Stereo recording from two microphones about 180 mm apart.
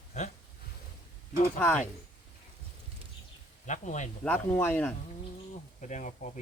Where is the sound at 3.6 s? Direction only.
40° left (ahead or behind).